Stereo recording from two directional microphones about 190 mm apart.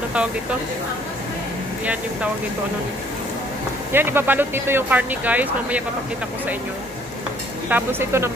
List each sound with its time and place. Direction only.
3.9 s speech: 10° right (ahead or behind)
7.7 s speech: 15° right (ahead or behind)